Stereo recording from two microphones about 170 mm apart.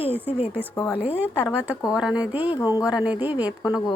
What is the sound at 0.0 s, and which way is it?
Speech, 35° left (ahead or behind).